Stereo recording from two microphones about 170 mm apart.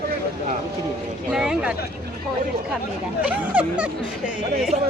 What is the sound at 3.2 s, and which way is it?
Speech, 10° right (ahead or behind).